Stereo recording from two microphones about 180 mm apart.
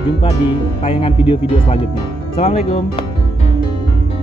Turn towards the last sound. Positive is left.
turn(degrees=35)  # may be behind; listen again after turning